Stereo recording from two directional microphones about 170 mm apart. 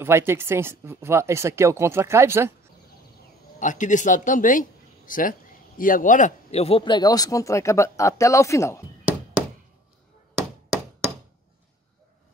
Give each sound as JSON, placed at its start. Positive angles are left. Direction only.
{"t": 0.0, "sound": "speech", "side_deg": -15}
{"t": 3.5, "sound": "a man's voice", "side_deg": 50}